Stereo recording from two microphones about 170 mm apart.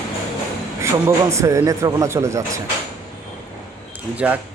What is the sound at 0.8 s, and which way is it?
Speech, 15° right (ahead or behind).